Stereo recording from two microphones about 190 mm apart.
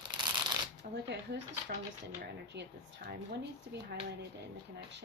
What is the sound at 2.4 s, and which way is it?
Speech, 65° right (ahead or behind).